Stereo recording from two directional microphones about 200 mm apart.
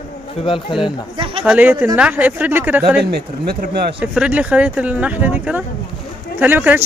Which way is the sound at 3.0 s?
55° right (ahead or behind).